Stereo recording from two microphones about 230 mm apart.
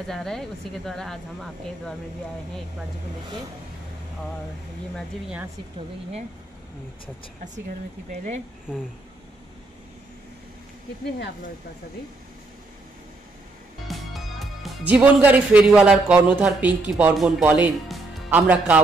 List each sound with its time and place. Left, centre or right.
0.0 s speech: centre
4.9 s speech: centre
8.1 s speech: right
13.8 s speech: centre